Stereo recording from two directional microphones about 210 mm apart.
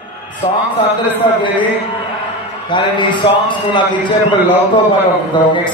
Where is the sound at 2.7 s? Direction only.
20° left (ahead or behind).